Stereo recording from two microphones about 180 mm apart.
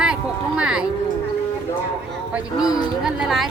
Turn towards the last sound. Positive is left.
turn(degrees=0)  # may be behind; listen again after turning